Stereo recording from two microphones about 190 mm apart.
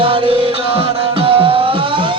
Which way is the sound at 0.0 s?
30° right (ahead or behind).